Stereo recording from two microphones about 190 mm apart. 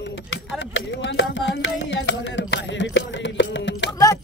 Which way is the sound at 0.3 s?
75° left (ahead or behind).